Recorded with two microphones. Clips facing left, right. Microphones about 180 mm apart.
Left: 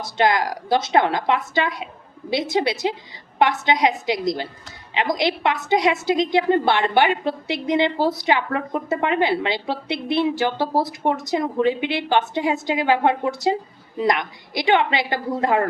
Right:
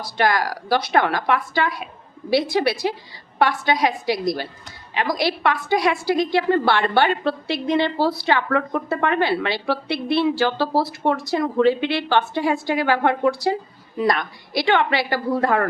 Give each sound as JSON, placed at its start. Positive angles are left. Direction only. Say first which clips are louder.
{"t": 0.0, "sound": "a woman's voice", "louder": "left 1 dB", "side_deg": 20}